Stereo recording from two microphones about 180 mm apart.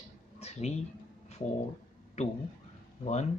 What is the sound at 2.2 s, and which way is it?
Speech, 35° left (ahead or behind).